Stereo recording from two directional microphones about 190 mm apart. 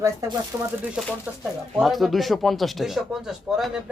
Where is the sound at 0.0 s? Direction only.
15° right (ahead or behind).